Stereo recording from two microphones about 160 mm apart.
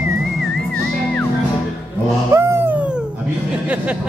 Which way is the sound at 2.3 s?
20° right (ahead or behind).